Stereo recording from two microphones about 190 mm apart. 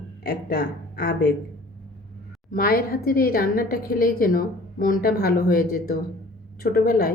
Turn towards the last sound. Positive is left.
turn(degrees=50)  # may be behind; listen again after turning